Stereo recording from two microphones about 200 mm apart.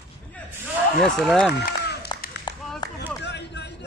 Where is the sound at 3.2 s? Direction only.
60° left (ahead or behind).